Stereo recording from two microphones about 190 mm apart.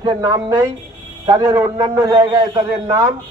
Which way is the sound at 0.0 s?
20° right (ahead or behind).